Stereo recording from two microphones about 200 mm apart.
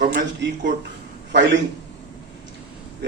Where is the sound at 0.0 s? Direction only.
60° right (ahead or behind).